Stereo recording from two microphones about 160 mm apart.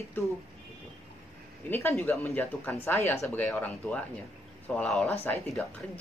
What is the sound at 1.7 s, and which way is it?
Speech, 15° left (ahead or behind).